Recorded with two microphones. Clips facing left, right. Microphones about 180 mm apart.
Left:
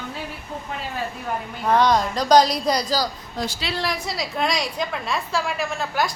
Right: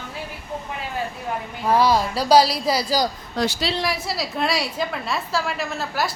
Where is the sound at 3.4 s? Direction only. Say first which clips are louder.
Right 5 dB; 90° right.